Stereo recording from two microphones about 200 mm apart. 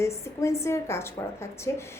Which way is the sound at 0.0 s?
15° left (ahead or behind).